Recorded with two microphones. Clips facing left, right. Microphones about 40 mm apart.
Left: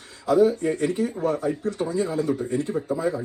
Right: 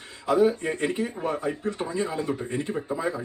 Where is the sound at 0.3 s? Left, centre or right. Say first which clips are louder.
Left 3 dB; right.